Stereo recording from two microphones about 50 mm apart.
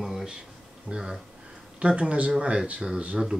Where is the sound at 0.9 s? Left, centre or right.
Right.